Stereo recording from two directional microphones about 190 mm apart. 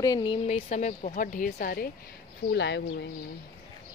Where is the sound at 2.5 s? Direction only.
65° left (ahead or behind).